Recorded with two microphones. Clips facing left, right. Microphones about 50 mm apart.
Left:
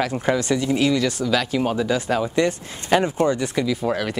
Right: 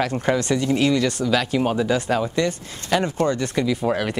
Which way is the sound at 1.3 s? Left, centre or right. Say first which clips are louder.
Right 1 dB; centre.